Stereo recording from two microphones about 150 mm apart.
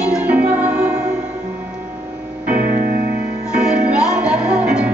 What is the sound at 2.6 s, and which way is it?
Music, 70° right (ahead or behind).